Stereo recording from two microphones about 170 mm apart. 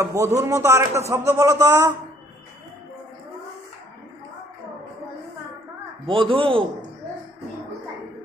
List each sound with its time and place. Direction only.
0.0 s a man's voice: 20° right (ahead or behind)
6.0 s a man's voice: 30° right (ahead or behind)